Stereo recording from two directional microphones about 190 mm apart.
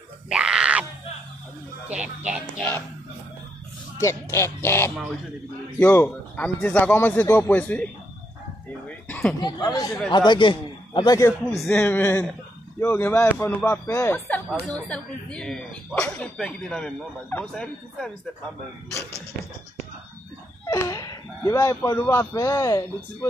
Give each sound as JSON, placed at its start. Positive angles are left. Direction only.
{"t": 0.3, "sound": "grunt", "side_deg": -5}
{"t": 1.9, "sound": "speech", "side_deg": -5}
{"t": 4.0, "sound": "speech", "side_deg": 15}
{"t": 9.4, "sound": "a man's voice", "side_deg": 20}
{"t": 11.5, "sound": "speech", "side_deg": 5}
{"t": 20.7, "sound": "speech", "side_deg": 15}